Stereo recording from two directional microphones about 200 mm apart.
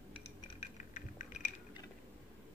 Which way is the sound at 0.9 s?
40° left (ahead or behind).